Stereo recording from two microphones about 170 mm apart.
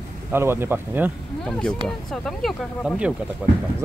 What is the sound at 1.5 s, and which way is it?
Speech, 5° left (ahead or behind).